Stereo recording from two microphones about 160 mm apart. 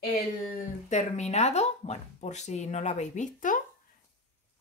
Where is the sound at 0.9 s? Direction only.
45° left (ahead or behind).